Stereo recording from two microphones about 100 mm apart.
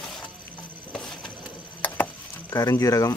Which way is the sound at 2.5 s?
35° left (ahead or behind).